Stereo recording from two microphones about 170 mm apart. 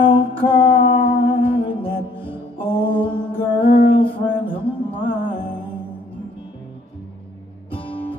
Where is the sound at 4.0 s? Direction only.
30° left (ahead or behind).